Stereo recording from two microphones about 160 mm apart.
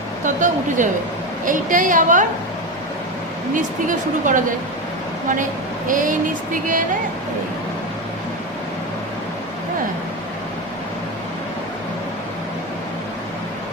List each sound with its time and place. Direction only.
0.8 s a woman's voice: 50° right (ahead or behind)
3.5 s speech: 55° right (ahead or behind)
5.9 s speech: 55° right (ahead or behind)